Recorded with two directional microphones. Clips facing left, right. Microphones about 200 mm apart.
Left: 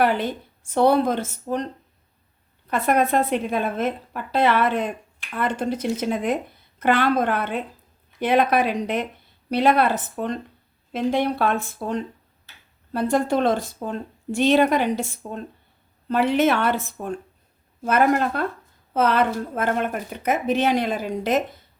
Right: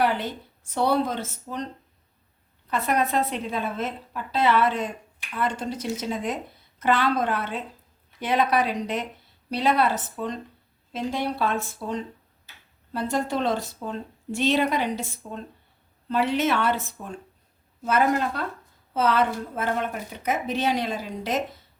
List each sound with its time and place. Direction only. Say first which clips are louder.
0.7 s speech: left 5 dB; 50° left (ahead or behind)
2.6 s a woman's voice: left 4 dB; 55° left (ahead or behind)